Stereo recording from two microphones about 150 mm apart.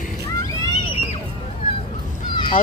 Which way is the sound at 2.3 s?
30° left (ahead or behind).